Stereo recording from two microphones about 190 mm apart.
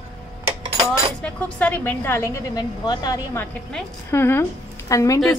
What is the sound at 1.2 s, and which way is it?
A woman's voice, 10° left (ahead or behind).